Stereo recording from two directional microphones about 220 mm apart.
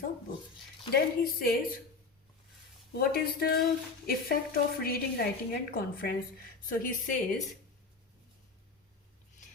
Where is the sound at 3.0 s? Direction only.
45° left (ahead or behind).